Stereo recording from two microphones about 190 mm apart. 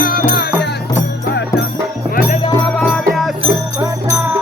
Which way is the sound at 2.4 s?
20° left (ahead or behind).